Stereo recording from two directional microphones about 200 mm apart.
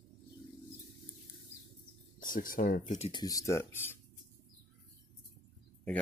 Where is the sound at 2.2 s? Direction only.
45° left (ahead or behind).